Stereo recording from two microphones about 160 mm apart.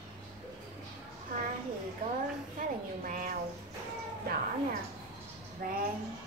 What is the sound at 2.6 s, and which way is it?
Speech, 55° right (ahead or behind).